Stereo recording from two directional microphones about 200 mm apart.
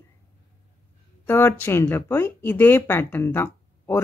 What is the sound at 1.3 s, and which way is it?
Speech, 10° left (ahead or behind).